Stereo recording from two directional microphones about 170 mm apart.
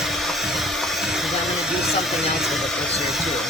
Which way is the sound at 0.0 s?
Centre (ahead or behind).